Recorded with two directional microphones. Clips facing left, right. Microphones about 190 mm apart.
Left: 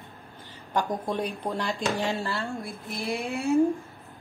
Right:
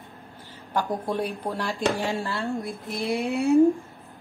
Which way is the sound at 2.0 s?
15° right (ahead or behind).